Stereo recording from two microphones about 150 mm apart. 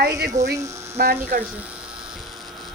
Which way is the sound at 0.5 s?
20° right (ahead or behind).